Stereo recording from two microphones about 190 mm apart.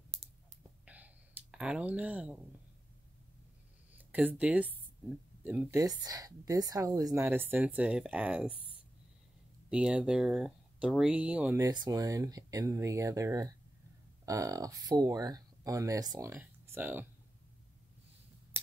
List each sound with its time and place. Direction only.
0.8 s a sound: 10° right (ahead or behind)
3.9 s speech: 10° right (ahead or behind)
9.7 s speech: 5° right (ahead or behind)